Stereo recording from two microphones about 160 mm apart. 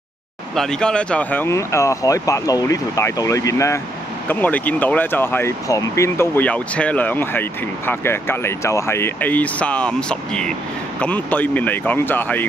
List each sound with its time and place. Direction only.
0.6 s speech: 5° left (ahead or behind)